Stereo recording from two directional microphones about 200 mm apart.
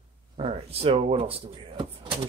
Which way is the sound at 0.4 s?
30° right (ahead or behind).